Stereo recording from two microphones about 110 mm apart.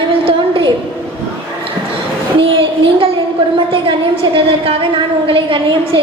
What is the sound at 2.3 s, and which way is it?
A woman's voice, 55° right (ahead or behind).